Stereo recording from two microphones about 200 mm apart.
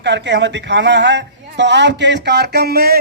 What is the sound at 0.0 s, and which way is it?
Speech, 60° right (ahead or behind).